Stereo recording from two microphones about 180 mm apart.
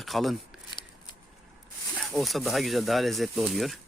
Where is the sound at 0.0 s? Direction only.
Centre (ahead or behind).